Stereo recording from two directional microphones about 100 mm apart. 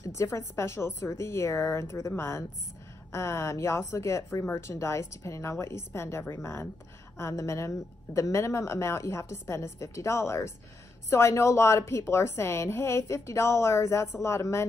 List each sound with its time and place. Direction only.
0.1 s a woman's voice: 30° left (ahead or behind)